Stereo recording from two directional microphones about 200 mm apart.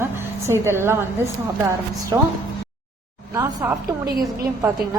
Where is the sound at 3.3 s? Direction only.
15° right (ahead or behind).